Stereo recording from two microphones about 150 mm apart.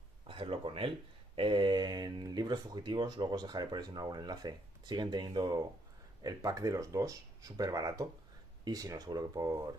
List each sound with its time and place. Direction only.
0.3 s speech: 35° right (ahead or behind)